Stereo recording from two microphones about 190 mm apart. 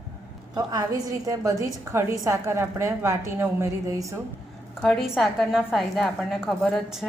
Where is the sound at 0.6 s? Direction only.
20° right (ahead or behind).